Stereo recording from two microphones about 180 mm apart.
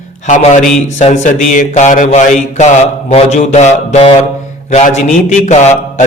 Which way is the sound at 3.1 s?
35° left (ahead or behind).